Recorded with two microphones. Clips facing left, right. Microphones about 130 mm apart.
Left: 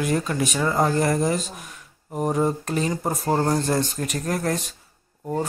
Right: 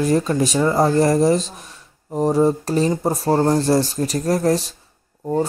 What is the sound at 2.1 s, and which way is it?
Speech, 30° right (ahead or behind).